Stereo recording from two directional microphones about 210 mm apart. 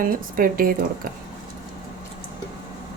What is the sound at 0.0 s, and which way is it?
Speech, 45° right (ahead or behind).